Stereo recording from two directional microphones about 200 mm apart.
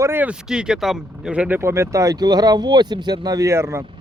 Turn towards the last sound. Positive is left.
turn(degrees=-15)  # may be behind; listen again after turning